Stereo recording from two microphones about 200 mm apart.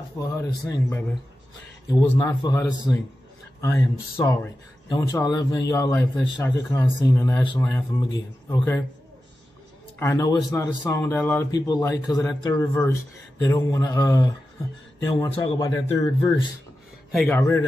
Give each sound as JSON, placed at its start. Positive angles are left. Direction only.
{"t": 0.2, "sound": "speech", "side_deg": 15}
{"t": 4.2, "sound": "speech", "side_deg": 15}
{"t": 9.9, "sound": "speech", "side_deg": 15}
{"t": 17.3, "sound": "speech", "side_deg": 15}